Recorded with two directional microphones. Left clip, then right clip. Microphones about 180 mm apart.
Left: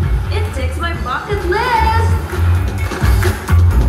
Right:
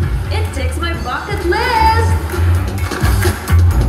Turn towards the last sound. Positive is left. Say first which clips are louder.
# even
turn(degrees=-50)  # may be behind; listen again after turning